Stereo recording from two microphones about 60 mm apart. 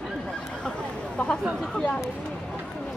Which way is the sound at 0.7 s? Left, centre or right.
Centre.